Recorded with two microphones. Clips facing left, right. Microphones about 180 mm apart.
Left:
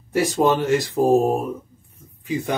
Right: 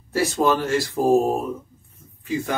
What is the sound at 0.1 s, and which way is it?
Speech, 20° left (ahead or behind).